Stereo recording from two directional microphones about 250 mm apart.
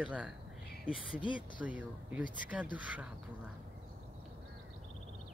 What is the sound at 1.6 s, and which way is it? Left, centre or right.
Speech, centre.